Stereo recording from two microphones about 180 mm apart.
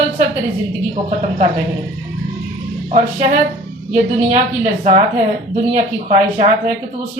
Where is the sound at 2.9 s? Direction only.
40° right (ahead or behind).